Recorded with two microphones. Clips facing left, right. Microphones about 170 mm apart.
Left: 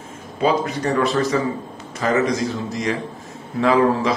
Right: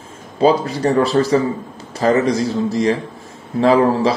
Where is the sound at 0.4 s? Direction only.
30° right (ahead or behind).